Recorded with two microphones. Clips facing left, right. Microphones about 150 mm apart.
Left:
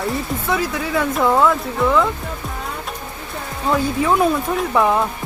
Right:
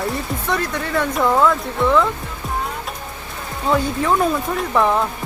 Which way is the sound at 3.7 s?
Centre (ahead or behind).